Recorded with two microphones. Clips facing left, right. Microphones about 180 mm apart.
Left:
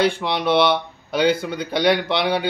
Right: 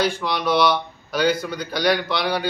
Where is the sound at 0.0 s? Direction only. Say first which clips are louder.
Left 2 dB; 25° left (ahead or behind).